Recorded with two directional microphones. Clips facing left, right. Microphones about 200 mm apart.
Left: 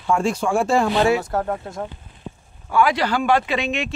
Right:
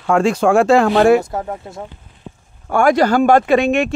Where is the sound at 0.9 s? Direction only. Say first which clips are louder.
Right 8 dB; 55° right (ahead or behind).